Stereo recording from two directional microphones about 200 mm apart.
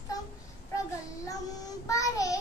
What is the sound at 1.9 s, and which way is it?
Child singing, 15° left (ahead or behind).